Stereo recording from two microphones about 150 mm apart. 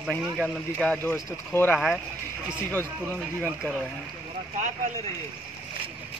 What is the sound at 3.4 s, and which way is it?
Speech, 5° right (ahead or behind).